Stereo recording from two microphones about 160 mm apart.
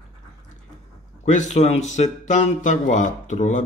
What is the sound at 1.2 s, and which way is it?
Speech, 50° left (ahead or behind).